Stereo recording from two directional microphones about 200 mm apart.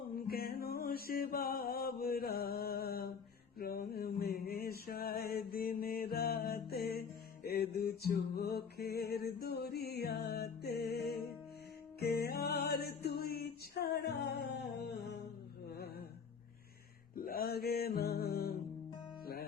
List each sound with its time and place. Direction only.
0.2 s music: 50° left (ahead or behind)
17.2 s music: 50° left (ahead or behind)